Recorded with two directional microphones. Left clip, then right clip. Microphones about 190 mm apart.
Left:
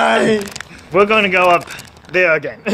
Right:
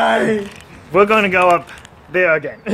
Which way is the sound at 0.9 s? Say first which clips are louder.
Even; 15° right (ahead or behind).